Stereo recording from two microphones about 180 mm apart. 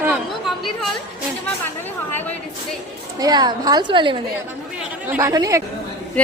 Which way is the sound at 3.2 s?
25° right (ahead or behind).